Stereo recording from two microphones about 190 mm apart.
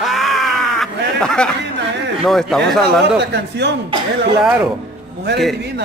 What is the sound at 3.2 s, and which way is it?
Speech, 65° right (ahead or behind).